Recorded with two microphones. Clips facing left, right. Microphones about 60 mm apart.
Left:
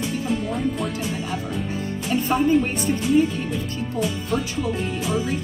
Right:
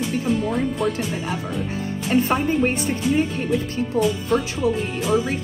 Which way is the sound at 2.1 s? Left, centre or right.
Right.